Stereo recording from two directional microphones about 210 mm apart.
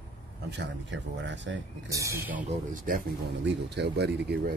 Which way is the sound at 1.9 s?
15° right (ahead or behind).